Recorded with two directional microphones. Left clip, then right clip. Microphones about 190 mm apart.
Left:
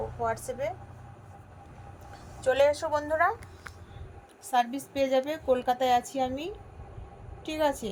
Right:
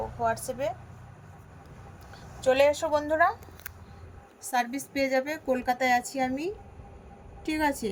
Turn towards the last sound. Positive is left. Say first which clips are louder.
# even
turn(degrees=-10)  # may be behind; listen again after turning